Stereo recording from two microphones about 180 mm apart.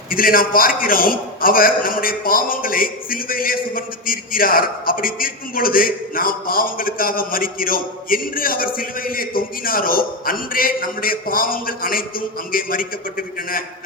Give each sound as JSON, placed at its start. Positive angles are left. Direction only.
{"t": 0.1, "sound": "a man's voice", "side_deg": 50}